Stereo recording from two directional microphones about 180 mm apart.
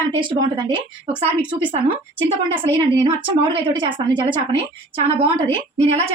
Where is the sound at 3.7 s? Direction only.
25° right (ahead or behind).